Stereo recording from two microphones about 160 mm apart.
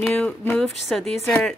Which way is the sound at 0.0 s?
10° left (ahead or behind).